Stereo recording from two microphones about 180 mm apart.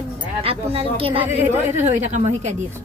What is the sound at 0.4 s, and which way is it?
Speech, 30° right (ahead or behind).